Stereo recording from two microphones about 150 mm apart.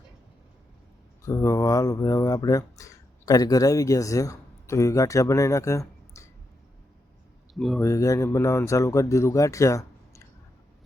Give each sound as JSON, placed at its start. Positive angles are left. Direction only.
{"t": 1.2, "sound": "speech", "side_deg": 20}
{"t": 7.5, "sound": "speech", "side_deg": 0}
{"t": 7.8, "sound": "speech", "side_deg": 20}